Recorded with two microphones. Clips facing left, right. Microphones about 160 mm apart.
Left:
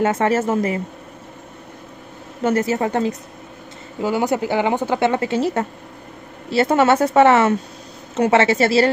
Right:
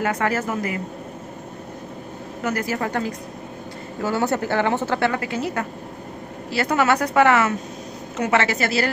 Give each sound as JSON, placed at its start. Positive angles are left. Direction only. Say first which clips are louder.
{"t": 0.0, "sound": "speech", "louder": "left 5 dB", "side_deg": 25}
{"t": 2.4, "sound": "speech", "louder": "left 6 dB", "side_deg": 25}